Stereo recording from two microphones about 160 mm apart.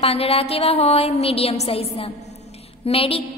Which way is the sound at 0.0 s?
40° left (ahead or behind).